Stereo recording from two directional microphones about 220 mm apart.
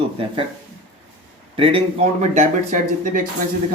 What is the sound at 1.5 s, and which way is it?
Speech, 25° right (ahead or behind).